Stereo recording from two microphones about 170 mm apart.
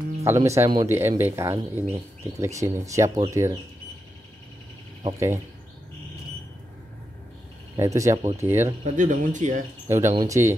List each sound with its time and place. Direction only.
0.2 s speech: 15° right (ahead or behind)
5.0 s speech: 15° right (ahead or behind)
7.7 s speech: 20° right (ahead or behind)
8.8 s speech: 45° right (ahead or behind)
9.8 s speech: 15° right (ahead or behind)